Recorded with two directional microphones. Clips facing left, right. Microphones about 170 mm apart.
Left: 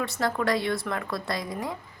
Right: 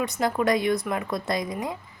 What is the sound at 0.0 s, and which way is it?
Speech, 20° right (ahead or behind).